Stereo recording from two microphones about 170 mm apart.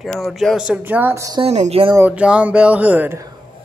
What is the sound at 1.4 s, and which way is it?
Speech, 35° right (ahead or behind).